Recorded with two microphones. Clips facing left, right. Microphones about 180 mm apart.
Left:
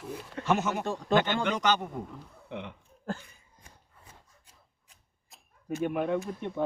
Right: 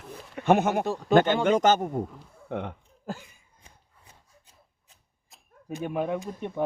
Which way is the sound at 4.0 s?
55° left (ahead or behind).